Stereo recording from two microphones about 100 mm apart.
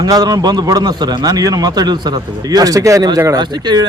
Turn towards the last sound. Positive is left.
turn(degrees=-45)  # may be behind; listen again after turning